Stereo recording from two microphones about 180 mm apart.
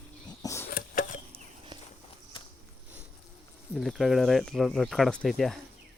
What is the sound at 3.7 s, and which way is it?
Speech, centre (ahead or behind).